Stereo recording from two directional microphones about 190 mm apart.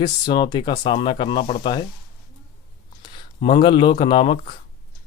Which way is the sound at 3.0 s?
25° left (ahead or behind).